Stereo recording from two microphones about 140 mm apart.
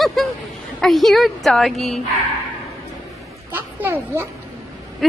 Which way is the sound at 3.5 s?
15° right (ahead or behind).